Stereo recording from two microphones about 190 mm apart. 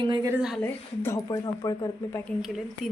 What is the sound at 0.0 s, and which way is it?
Speech, 25° right (ahead or behind).